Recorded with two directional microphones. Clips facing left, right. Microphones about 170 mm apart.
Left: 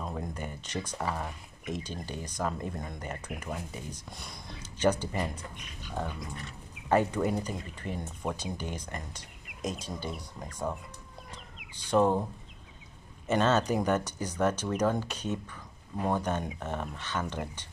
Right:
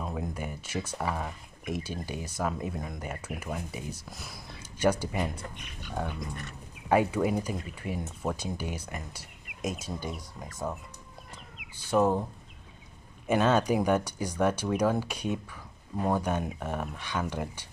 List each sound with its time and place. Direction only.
0.0 s speech: 5° right (ahead or behind)
11.7 s speech: 5° right (ahead or behind)
13.3 s speech: 10° right (ahead or behind)